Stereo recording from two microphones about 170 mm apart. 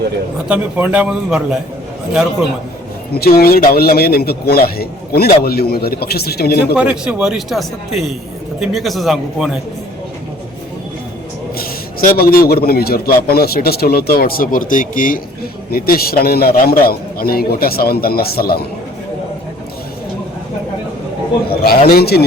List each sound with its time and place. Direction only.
0.4 s a man's voice: 10° right (ahead or behind)
3.2 s a man's voice: 60° left (ahead or behind)
6.7 s speech: 5° right (ahead or behind)
11.5 s a man's voice: 60° left (ahead or behind)
21.5 s a man's voice: 65° left (ahead or behind)